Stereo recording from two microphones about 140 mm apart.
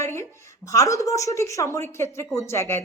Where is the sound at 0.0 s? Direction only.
20° left (ahead or behind).